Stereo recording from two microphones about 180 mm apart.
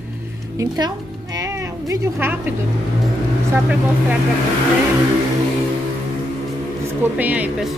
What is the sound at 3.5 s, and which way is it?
Speech, 10° right (ahead or behind).